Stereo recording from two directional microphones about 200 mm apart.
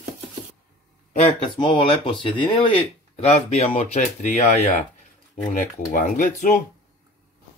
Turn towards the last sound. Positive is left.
turn(degrees=40)  # may be behind; listen again after turning